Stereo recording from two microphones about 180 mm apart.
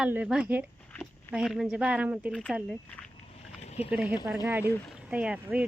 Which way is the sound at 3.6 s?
35° left (ahead or behind).